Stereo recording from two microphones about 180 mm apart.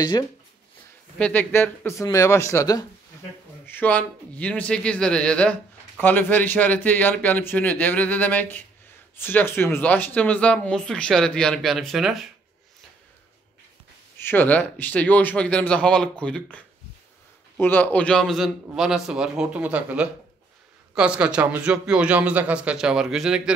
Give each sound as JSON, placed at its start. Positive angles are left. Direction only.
{"t": 0.0, "sound": "speech", "side_deg": 25}
{"t": 1.1, "sound": "a man's voice", "side_deg": 5}
{"t": 14.1, "sound": "a man's voice", "side_deg": 10}